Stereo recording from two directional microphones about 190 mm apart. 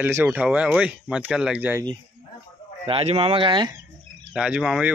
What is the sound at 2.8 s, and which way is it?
Speech, 30° right (ahead or behind).